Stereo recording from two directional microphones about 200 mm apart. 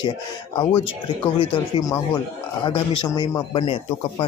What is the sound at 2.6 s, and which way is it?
Speech, 20° left (ahead or behind).